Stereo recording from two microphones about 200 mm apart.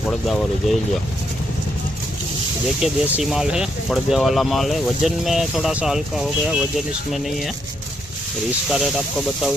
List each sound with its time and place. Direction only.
0.1 s speech: centre (ahead or behind)
2.8 s speech: centre (ahead or behind)
8.7 s speech: centre (ahead or behind)